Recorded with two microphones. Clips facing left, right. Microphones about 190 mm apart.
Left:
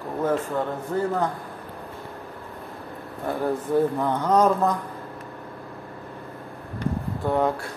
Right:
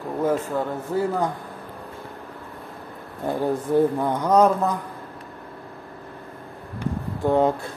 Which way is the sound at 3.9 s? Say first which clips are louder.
Right 2 dB; 10° right (ahead or behind).